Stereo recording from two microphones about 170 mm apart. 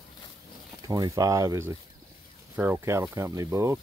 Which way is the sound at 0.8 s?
20° right (ahead or behind).